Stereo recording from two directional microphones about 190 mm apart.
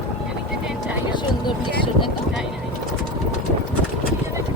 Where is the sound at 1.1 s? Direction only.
25° left (ahead or behind).